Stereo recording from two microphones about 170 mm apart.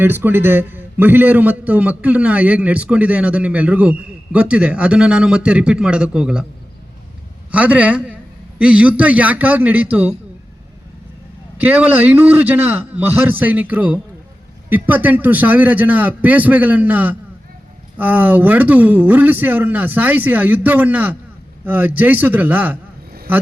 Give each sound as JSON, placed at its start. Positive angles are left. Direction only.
{"t": 0.0, "sound": "a man's voice", "side_deg": -10}
{"t": 7.5, "sound": "a man's voice", "side_deg": -10}
{"t": 11.5, "sound": "a man's voice", "side_deg": -10}